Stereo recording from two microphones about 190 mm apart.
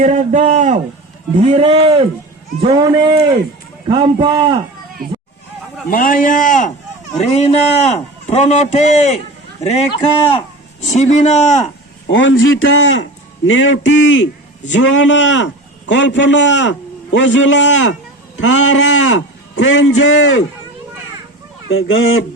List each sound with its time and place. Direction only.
0.0 s a man's voice: 40° right (ahead or behind); by 4.5 s 25° right (ahead or behind)
5.9 s a man's voice: 45° left (ahead or behind)
12.1 s a man's voice: 85° left
21.7 s speech: 90° left